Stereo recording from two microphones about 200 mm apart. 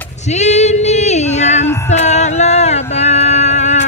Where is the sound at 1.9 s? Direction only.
35° left (ahead or behind).